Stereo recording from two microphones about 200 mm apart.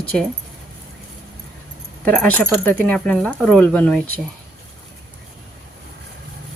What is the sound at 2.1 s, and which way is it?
Speech, 5° left (ahead or behind).